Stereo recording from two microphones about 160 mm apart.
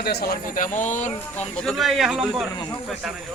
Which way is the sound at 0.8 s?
50° left (ahead or behind).